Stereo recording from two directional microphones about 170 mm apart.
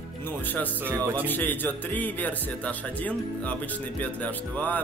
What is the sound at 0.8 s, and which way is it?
Speech, 15° right (ahead or behind).